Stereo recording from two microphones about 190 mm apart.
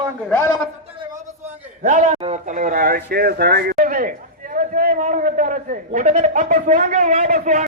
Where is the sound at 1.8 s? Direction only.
40° right (ahead or behind).